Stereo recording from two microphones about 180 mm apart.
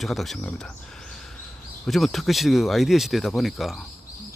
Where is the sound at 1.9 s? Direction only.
Centre (ahead or behind).